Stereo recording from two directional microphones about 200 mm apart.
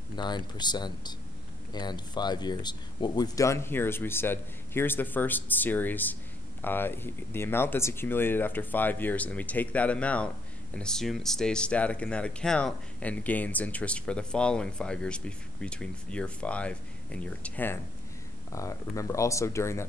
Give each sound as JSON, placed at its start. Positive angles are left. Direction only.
{"t": 0.1, "sound": "speech", "side_deg": 20}